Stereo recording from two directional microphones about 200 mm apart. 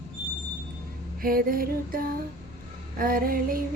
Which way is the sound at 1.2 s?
45° right (ahead or behind).